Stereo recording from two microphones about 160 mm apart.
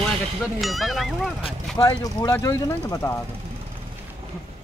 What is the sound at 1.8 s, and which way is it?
Speech, 20° left (ahead or behind).